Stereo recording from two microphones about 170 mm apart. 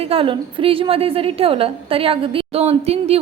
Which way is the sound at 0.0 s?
30° right (ahead or behind).